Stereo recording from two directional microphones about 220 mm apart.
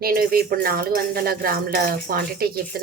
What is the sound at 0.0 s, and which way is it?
A woman's voice, 45° right (ahead or behind).